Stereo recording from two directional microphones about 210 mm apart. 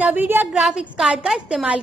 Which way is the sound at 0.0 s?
10° right (ahead or behind).